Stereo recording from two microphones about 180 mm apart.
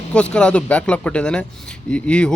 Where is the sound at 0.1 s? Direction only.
5° left (ahead or behind).